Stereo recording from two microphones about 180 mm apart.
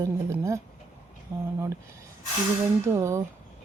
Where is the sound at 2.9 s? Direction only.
15° right (ahead or behind).